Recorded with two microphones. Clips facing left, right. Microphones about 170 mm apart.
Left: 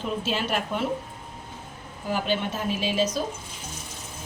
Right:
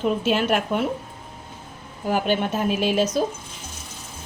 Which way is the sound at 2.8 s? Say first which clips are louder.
Right 3 dB; 55° right (ahead or behind).